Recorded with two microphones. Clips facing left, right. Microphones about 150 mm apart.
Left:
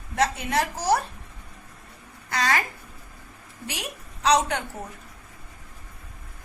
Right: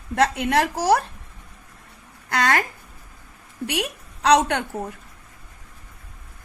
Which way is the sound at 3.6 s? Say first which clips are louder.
Right 9 dB; 65° right (ahead or behind).